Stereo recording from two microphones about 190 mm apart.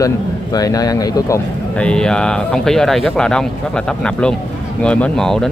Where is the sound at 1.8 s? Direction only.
5° left (ahead or behind).